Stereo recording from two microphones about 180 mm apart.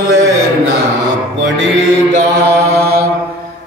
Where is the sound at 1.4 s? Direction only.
90° right.